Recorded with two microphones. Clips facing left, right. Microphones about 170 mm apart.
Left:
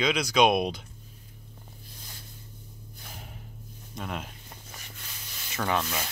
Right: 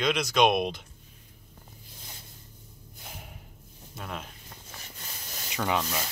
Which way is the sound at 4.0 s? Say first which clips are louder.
Left 3 dB; centre (ahead or behind).